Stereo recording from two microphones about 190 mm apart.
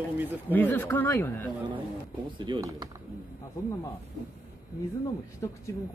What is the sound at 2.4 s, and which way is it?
Speech, 20° right (ahead or behind).